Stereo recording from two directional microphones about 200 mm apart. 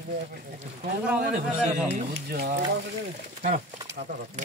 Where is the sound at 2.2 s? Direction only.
50° right (ahead or behind).